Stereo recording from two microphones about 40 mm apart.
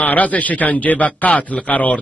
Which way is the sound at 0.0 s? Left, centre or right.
Left.